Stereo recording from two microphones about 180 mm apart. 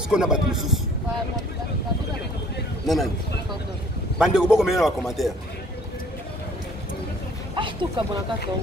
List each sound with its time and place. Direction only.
0.1 s a man's voice: 5° right (ahead or behind)
4.2 s a man's voice: 5° right (ahead or behind)
7.5 s speech: 25° right (ahead or behind)